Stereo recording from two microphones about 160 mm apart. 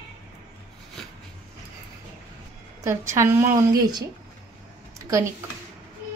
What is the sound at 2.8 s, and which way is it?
Speech, 15° right (ahead or behind).